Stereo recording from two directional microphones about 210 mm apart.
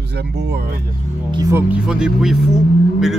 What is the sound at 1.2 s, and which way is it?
Speech, 20° right (ahead or behind).